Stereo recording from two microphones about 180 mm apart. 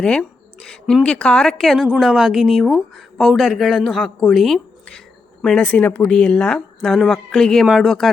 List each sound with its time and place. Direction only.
0.0 s speech: 5° left (ahead or behind)